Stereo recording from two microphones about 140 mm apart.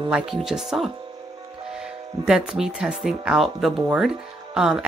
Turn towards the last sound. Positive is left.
turn(degrees=-5)  # may be behind; listen again after turning